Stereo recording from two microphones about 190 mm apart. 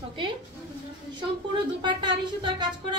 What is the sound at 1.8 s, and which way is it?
A woman's voice, 25° right (ahead or behind).